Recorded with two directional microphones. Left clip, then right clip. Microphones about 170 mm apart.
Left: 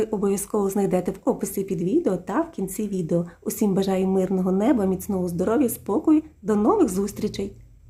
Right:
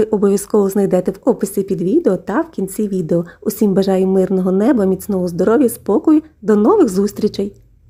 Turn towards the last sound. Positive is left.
turn(degrees=-35)  # may be behind; listen again after turning